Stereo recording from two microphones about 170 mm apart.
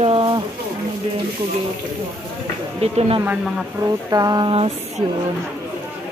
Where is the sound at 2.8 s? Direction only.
35° right (ahead or behind).